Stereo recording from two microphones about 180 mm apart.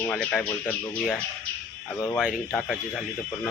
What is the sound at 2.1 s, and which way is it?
Speech, 5° right (ahead or behind).